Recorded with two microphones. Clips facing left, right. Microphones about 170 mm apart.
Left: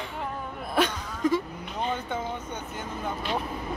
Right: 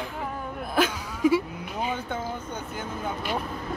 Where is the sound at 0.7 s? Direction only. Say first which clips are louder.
Right 1 dB; 5° right (ahead or behind).